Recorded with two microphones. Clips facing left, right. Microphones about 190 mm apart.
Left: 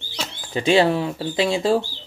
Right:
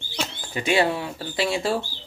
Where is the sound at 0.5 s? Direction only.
25° left (ahead or behind).